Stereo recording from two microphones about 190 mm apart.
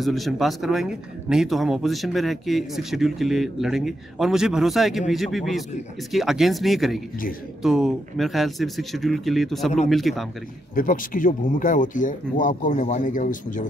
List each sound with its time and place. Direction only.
0.0 s a man's voice: centre (ahead or behind)
10.7 s speech: 45° left (ahead or behind)